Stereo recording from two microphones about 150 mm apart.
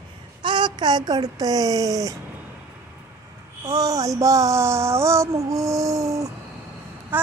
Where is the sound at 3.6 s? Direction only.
25° right (ahead or behind).